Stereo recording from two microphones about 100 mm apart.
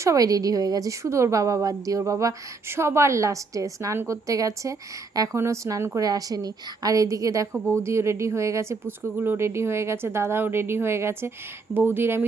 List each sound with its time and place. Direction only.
0.0 s a woman's voice: 35° right (ahead or behind)